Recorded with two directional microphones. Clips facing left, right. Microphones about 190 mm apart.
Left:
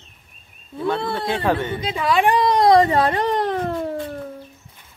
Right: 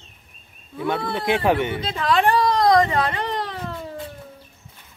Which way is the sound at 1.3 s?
10° right (ahead or behind).